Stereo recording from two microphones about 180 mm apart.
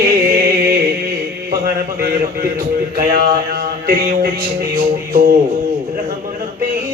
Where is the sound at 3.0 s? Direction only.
55° right (ahead or behind).